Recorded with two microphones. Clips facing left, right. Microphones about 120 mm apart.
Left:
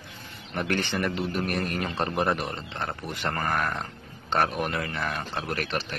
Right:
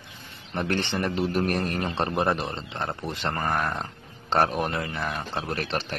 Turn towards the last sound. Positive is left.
turn(degrees=-35)  # may be behind; listen again after turning